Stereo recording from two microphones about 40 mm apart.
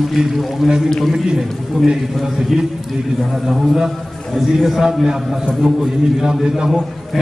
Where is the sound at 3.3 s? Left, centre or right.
Centre.